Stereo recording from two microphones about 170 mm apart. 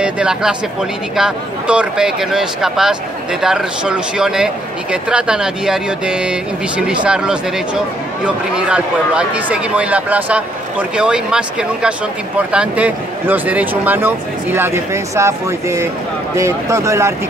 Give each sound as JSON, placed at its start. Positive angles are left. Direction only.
{"t": 0.0, "sound": "speech", "side_deg": -5}